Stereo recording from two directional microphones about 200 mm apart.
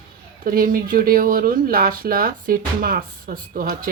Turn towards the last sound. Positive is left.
turn(degrees=-45)  # may be behind; listen again after turning